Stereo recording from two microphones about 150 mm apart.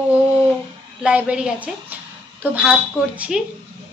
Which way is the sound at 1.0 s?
10° right (ahead or behind).